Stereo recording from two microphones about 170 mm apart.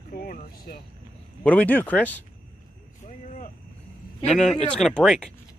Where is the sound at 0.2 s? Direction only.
55° left (ahead or behind).